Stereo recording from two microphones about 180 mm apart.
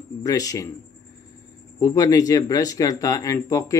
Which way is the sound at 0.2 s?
20° left (ahead or behind).